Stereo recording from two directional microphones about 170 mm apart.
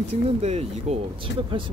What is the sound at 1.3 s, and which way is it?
Speech, 90° left.